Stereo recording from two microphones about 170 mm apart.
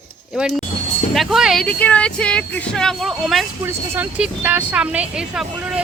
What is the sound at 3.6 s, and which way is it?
Speech, 10° right (ahead or behind).